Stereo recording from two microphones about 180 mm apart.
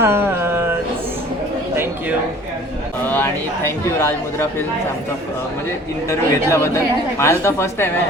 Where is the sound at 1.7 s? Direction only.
10° right (ahead or behind).